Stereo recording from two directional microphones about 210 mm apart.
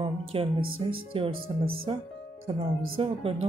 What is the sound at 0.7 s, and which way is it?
Speech, 25° right (ahead or behind).